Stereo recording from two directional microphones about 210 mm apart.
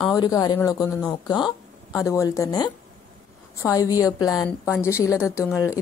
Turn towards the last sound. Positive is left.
turn(degrees=15)  # may be behind; listen again after turning